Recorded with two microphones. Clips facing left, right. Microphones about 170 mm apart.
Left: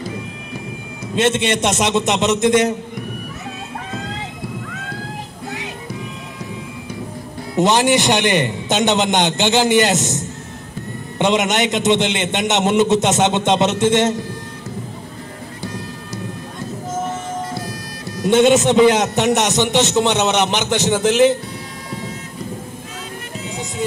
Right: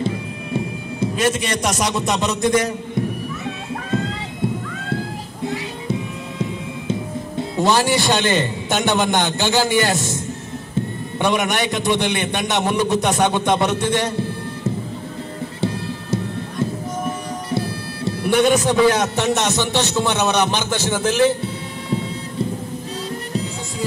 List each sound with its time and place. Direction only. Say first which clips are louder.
1.1 s a man's voice: left 5 dB; 25° left (ahead or behind)
7.5 s a man's voice: left 3 dB; 20° left (ahead or behind)
17.6 s music: right 4 dB; 25° right (ahead or behind)
18.2 s a man's voice: left 4 dB; 20° left (ahead or behind)